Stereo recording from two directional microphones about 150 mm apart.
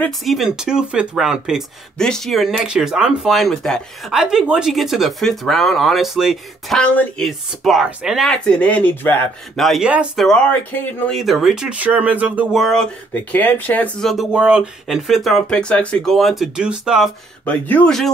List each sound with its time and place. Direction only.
0.2 s speech: centre (ahead or behind)
9.6 s speech: centre (ahead or behind)
10.2 s speech: 5° left (ahead or behind); by 12.6 s 10° right (ahead or behind)
12.6 s speech: 5° left (ahead or behind)
14.1 s speech: 5° right (ahead or behind)
17.5 s speech: 10° left (ahead or behind)